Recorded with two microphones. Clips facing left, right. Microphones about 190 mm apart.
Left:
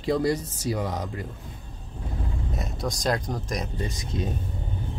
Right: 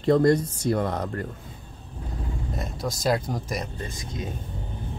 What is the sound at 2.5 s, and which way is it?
Speech, centre (ahead or behind).